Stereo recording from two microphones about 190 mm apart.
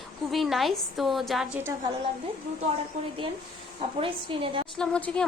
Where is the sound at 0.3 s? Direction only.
Centre (ahead or behind).